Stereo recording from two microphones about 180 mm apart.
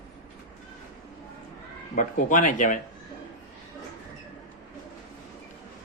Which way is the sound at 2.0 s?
45° left (ahead or behind).